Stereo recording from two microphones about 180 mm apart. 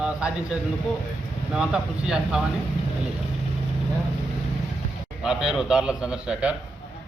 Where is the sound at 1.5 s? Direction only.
5° right (ahead or behind).